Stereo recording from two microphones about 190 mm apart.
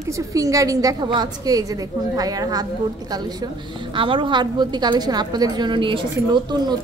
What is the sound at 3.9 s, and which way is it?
A woman's voice, 25° right (ahead or behind).